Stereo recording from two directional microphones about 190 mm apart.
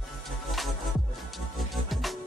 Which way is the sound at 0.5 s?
Centre (ahead or behind).